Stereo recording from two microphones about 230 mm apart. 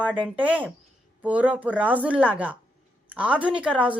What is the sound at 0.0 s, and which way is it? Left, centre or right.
A woman's voice, centre.